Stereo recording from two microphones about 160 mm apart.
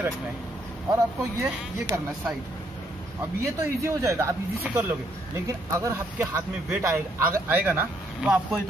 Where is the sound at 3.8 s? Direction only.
20° right (ahead or behind).